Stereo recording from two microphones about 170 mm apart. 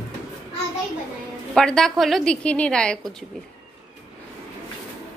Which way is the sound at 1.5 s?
5° left (ahead or behind).